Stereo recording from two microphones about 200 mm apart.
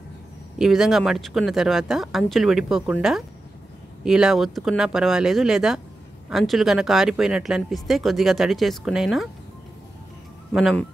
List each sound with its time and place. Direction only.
0.6 s speech: centre (ahead or behind)
10.5 s speech: centre (ahead or behind)